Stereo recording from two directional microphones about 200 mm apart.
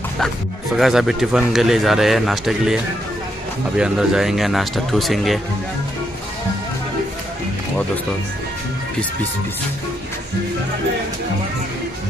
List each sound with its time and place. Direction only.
0.7 s a man's voice: centre (ahead or behind)